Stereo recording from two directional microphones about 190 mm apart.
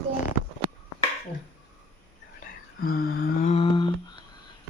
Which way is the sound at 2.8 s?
50° left (ahead or behind).